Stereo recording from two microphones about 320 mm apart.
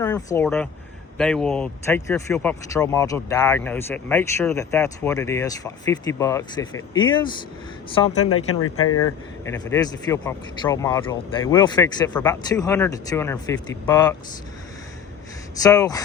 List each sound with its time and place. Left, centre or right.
0.0 s speech: centre
8.2 s speech: left
9.0 s speech: centre
15.6 s speech: centre